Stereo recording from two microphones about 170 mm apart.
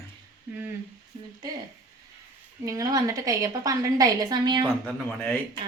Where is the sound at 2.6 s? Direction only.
20° right (ahead or behind).